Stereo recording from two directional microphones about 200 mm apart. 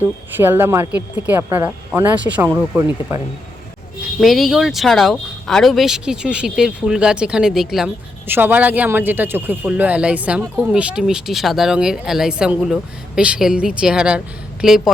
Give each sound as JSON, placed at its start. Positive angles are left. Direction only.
{"t": 0.0, "sound": "a woman's voice", "side_deg": -10}
{"t": 4.2, "sound": "a woman's voice", "side_deg": 0}